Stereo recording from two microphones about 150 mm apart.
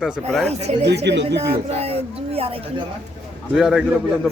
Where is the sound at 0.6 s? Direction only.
45° right (ahead or behind).